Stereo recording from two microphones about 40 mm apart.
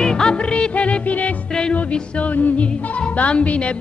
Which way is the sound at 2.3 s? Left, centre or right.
Left.